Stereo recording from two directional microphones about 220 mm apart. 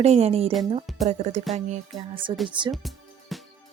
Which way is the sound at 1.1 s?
30° right (ahead or behind).